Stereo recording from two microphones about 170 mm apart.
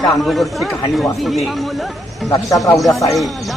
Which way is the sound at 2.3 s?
20° left (ahead or behind).